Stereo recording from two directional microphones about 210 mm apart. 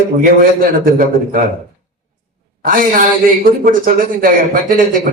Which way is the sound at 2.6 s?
40° right (ahead or behind).